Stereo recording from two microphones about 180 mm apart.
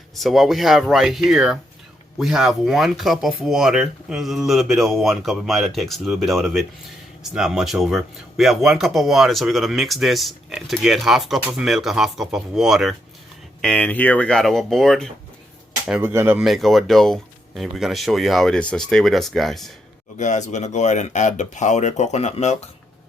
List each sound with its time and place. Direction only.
0.2 s speech: centre (ahead or behind)
15.9 s speech: 10° right (ahead or behind)
16.4 s speech: centre (ahead or behind)
20.1 s speech: 40° left (ahead or behind)